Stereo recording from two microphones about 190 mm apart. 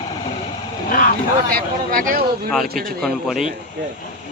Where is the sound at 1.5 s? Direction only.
50° right (ahead or behind).